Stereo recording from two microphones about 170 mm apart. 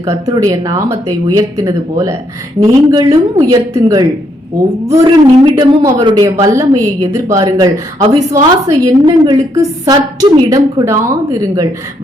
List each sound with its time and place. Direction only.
0.0 s a woman's voice: 20° right (ahead or behind)